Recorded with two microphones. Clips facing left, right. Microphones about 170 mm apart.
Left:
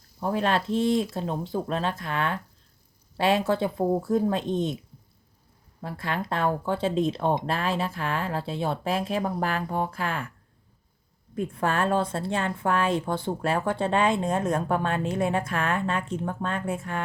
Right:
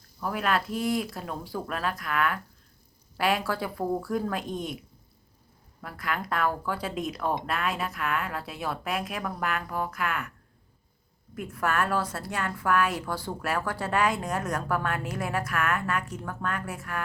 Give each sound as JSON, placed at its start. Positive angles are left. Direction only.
{"t": 0.2, "sound": "a woman's voice", "side_deg": 25}
{"t": 5.8, "sound": "a woman's voice", "side_deg": 25}
{"t": 11.3, "sound": "a woman's voice", "side_deg": 30}